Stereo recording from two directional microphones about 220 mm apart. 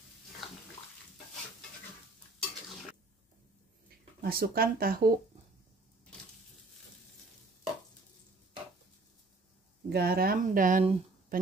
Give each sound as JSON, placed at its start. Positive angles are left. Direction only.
{"t": 4.2, "sound": "speech", "side_deg": -45}
{"t": 9.8, "sound": "speech", "side_deg": -45}